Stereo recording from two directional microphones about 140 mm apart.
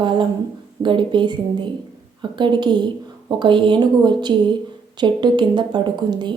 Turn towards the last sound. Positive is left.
turn(degrees=-30)  # may be behind; listen again after turning